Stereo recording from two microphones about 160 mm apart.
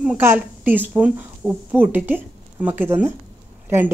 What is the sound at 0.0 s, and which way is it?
A woman's voice, 10° right (ahead or behind).